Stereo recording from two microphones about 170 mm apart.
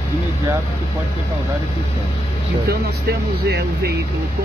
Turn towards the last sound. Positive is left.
turn(degrees=-70)  # may be behind; listen again after turning